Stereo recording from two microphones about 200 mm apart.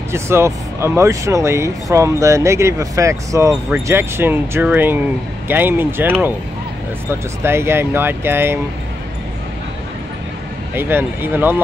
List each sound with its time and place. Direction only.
0.1 s speech: 15° right (ahead or behind)
10.7 s speech: 10° right (ahead or behind)